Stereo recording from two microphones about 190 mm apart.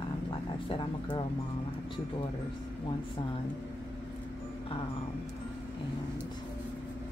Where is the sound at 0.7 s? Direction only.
25° left (ahead or behind).